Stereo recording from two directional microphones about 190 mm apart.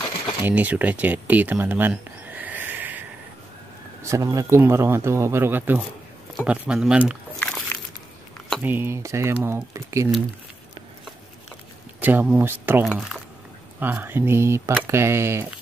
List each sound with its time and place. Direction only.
0.4 s speech: 10° right (ahead or behind)
4.0 s speech: 15° right (ahead or behind)
7.3 s music: 5° left (ahead or behind)
8.6 s speech: 10° right (ahead or behind)
12.0 s speech: 10° right (ahead or behind)